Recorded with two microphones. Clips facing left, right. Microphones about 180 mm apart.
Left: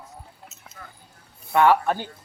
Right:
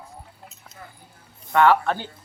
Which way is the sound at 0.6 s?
5° left (ahead or behind).